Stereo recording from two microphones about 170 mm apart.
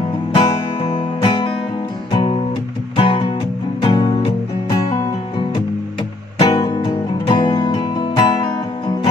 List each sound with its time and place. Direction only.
0.3 s music: 30° left (ahead or behind)
6.5 s music: 25° left (ahead or behind)